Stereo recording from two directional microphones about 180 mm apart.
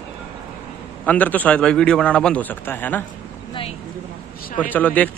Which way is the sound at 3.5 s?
30° left (ahead or behind).